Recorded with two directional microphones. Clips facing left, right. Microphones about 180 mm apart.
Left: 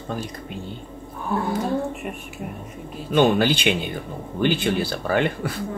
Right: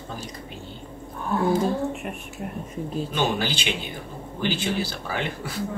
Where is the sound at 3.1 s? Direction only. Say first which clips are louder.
Left 10 dB; 55° left (ahead or behind).